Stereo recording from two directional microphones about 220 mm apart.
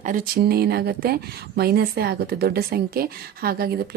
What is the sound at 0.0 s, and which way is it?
A woman's voice, 40° right (ahead or behind).